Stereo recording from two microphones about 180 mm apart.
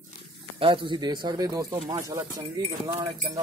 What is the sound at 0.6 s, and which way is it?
Speech, 25° right (ahead or behind).